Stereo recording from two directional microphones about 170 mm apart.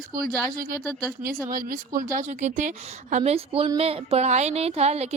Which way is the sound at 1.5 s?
55° right (ahead or behind).